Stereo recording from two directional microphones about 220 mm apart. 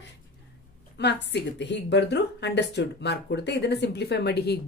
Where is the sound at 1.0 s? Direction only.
50° left (ahead or behind).